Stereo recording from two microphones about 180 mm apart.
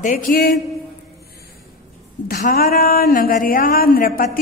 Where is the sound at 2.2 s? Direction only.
55° left (ahead or behind).